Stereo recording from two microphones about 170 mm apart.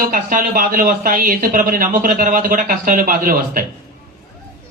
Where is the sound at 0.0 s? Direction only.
55° right (ahead or behind).